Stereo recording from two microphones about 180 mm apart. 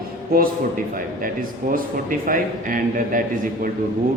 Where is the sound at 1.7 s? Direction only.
50° right (ahead or behind).